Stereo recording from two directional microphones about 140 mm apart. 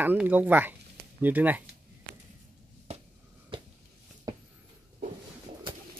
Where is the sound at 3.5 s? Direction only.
35° right (ahead or behind).